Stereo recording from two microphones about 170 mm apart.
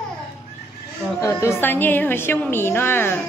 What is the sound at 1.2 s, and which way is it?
A woman's voice, 15° left (ahead or behind).